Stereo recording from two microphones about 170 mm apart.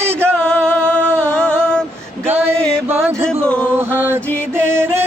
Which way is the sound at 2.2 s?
15° right (ahead or behind).